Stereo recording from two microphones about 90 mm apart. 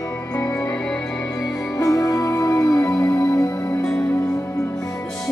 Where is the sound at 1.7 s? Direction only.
40° left (ahead or behind).